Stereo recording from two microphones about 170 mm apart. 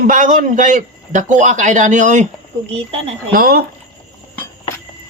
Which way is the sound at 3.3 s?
60° right (ahead or behind).